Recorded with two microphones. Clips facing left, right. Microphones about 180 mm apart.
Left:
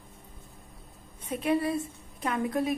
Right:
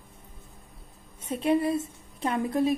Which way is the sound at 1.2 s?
25° right (ahead or behind).